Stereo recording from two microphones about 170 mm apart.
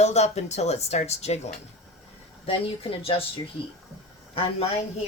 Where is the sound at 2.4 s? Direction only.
35° left (ahead or behind).